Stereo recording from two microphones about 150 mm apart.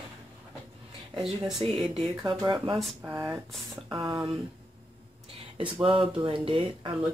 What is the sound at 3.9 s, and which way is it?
Speech, 30° right (ahead or behind).